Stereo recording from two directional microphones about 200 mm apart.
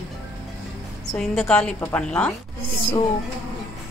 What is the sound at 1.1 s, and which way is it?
A woman's voice, centre (ahead or behind).